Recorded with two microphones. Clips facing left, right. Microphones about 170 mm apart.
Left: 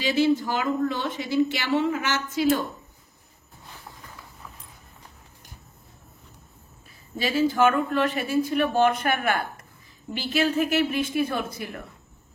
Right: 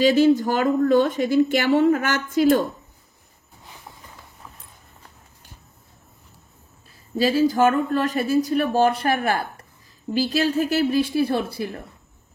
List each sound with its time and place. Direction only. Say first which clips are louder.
0.0 s a woman's voice: right 6 dB; 45° right (ahead or behind)
7.4 s speech: right 3 dB; 40° right (ahead or behind)